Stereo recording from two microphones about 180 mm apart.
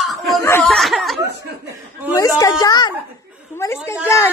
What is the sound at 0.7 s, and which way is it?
Speech, centre (ahead or behind).